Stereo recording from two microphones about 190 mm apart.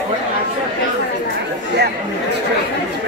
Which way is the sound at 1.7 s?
60° right (ahead or behind).